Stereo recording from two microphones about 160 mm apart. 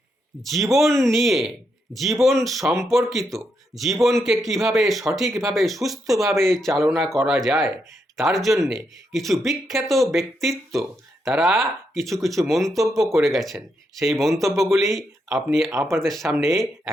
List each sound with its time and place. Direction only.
0.5 s speech: centre (ahead or behind)
13.0 s speech: 20° right (ahead or behind)
13.2 s speech: centre (ahead or behind)